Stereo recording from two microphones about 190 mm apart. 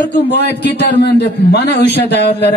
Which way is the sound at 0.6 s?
60° left (ahead or behind).